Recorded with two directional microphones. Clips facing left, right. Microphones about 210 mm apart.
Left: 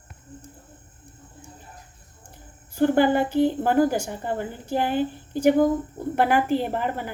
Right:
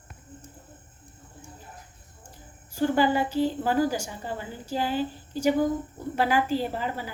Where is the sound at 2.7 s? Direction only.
55° left (ahead or behind).